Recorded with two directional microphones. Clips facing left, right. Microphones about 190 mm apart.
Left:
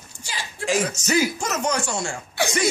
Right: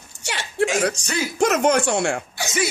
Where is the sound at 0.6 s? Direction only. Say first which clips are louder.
Right 5 dB; 75° right (ahead or behind).